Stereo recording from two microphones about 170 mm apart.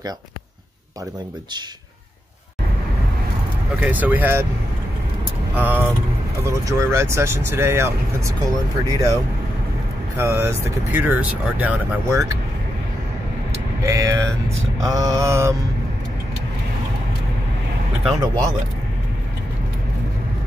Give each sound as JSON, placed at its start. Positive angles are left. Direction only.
{"t": 3.8, "sound": "speech", "side_deg": -10}
{"t": 5.6, "sound": "speech", "side_deg": -10}
{"t": 13.8, "sound": "speech", "side_deg": -15}
{"t": 14.8, "sound": "mantra", "side_deg": -20}